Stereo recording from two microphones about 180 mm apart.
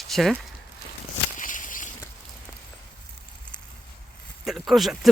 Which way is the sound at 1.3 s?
45° left (ahead or behind).